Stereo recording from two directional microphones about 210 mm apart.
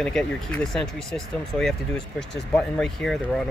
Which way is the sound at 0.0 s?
5° left (ahead or behind).